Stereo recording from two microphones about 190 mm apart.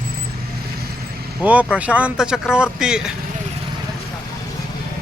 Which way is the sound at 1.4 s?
5° right (ahead or behind).